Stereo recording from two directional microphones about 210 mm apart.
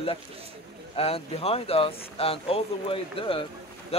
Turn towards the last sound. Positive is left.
turn(degrees=25)  # may be behind; listen again after turning